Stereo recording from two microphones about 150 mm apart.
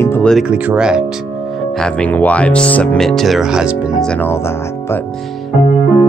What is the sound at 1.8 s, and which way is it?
Speech, 10° left (ahead or behind).